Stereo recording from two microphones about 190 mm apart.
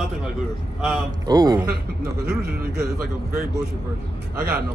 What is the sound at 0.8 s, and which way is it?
Speech, centre (ahead or behind).